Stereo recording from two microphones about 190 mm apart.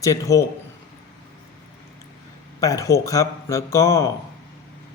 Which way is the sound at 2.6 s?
15° left (ahead or behind).